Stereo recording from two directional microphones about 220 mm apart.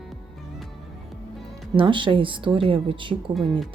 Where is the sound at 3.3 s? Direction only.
Centre (ahead or behind).